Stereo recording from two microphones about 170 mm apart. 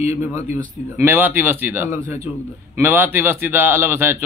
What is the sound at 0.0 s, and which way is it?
A man's voice, 15° right (ahead or behind).